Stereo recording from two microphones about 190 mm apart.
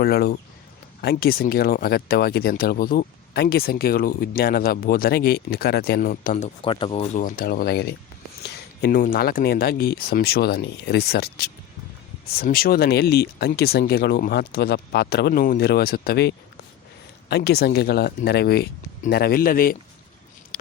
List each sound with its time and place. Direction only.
0.0 s speech: 55° left (ahead or behind)